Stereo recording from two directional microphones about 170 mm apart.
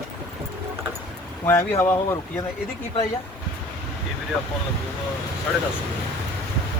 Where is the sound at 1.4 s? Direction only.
15° left (ahead or behind).